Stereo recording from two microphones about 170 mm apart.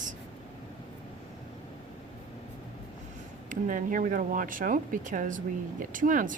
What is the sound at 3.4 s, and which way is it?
Speech, 50° right (ahead or behind).